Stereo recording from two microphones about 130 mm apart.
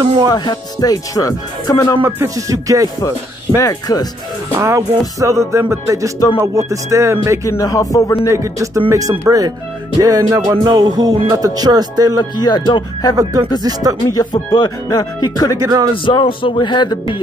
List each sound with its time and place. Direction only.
0.3 s speech: 30° left (ahead or behind)
2.0 s music: 20° right (ahead or behind)
3.5 s speech: 25° left (ahead or behind)
4.6 s music: 20° right (ahead or behind)
7.4 s speech: 25° left (ahead or behind)
8.3 s music: 25° right (ahead or behind)
12.4 s speech: 35° left (ahead or behind)
13.2 s music: 25° right (ahead or behind)
14.0 s speech: 30° left (ahead or behind)
15.5 s music: 25° right (ahead or behind)
16.1 s speech: 40° left (ahead or behind)